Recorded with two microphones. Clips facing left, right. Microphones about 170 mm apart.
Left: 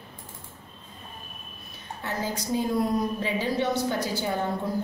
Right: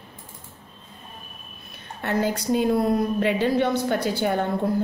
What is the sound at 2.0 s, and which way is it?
A woman's voice, 65° right (ahead or behind).